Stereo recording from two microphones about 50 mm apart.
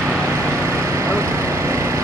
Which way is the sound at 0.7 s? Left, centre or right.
Right.